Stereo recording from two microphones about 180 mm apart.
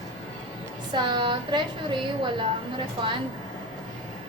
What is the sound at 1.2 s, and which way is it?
Speech, 25° right (ahead or behind).